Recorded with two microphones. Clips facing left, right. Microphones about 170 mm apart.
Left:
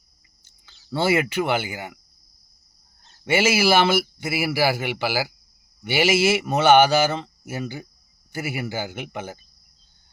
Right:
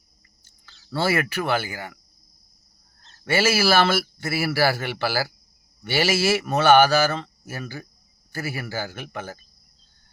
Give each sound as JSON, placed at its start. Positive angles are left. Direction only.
{"t": 0.4, "sound": "speech", "side_deg": 15}
{"t": 3.0, "sound": "a man's voice", "side_deg": 15}